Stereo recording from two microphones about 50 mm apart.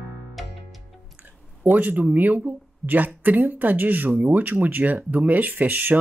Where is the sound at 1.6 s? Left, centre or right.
Right.